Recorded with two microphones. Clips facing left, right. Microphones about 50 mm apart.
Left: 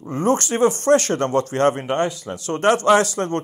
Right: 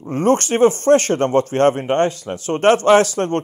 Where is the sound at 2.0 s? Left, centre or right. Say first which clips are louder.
Right 4 dB; right.